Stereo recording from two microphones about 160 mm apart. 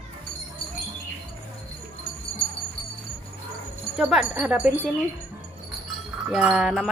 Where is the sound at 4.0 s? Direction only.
5° right (ahead or behind).